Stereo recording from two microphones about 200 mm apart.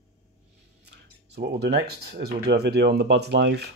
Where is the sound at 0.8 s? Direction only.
55° right (ahead or behind).